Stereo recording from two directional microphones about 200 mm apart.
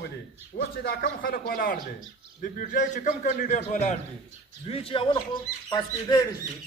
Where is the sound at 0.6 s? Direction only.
50° left (ahead or behind).